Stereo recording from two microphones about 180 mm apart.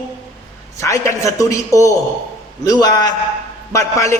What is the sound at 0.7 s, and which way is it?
A man's voice, 15° left (ahead or behind).